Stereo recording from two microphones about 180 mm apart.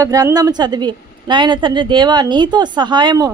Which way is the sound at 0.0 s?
20° right (ahead or behind).